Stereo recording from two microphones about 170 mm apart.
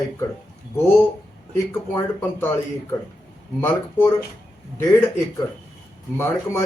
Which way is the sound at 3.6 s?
15° left (ahead or behind).